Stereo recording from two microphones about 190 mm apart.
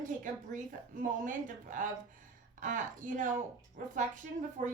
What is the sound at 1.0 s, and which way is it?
A woman's voice, 45° right (ahead or behind).